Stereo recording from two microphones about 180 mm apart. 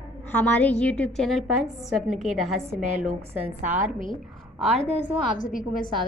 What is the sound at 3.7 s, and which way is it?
Speech, 45° right (ahead or behind).